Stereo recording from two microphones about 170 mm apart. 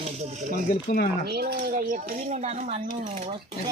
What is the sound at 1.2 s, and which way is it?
Speech, 70° right (ahead or behind).